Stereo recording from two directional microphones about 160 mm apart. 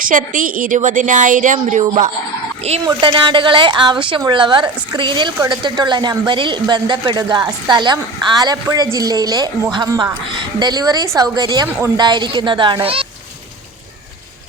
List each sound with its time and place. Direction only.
0.0 s a woman's voice: 55° right (ahead or behind)
2.8 s a woman's voice: 30° right (ahead or behind)